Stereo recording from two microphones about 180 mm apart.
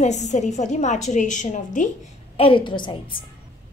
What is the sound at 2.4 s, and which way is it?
Speech, 30° left (ahead or behind).